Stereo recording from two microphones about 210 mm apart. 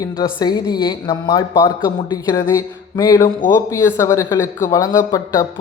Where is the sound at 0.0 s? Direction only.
20° left (ahead or behind).